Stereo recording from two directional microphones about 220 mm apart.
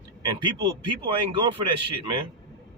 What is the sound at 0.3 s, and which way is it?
A man's voice, 20° right (ahead or behind).